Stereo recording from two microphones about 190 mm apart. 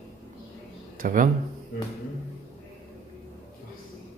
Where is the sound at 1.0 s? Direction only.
45° right (ahead or behind).